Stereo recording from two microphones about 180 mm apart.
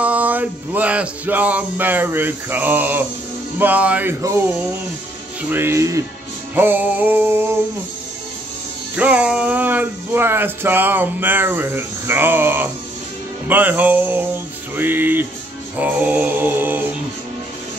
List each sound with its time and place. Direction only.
0.0 s speech: 10° right (ahead or behind)
8.9 s speech: 5° right (ahead or behind)